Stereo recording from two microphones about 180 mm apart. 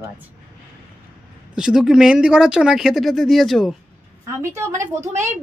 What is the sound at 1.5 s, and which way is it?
A woman's voice, 5° right (ahead or behind).